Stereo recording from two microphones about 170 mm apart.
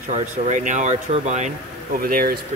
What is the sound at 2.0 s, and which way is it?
Speech, 60° right (ahead or behind).